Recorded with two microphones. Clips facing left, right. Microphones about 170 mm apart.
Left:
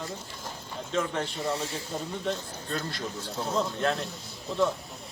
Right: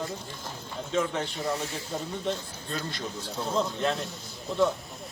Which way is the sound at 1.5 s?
30° left (ahead or behind).